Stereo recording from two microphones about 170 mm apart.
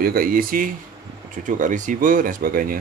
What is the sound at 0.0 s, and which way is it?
Speech, 60° right (ahead or behind).